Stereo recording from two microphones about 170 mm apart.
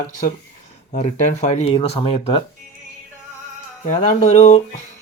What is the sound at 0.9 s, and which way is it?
Speech, 45° left (ahead or behind).